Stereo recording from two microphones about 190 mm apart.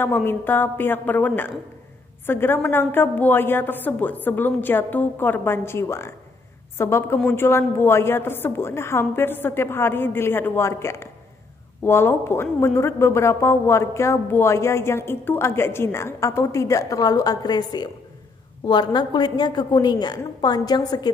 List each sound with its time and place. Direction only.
0.0 s a woman's voice: 10° left (ahead or behind)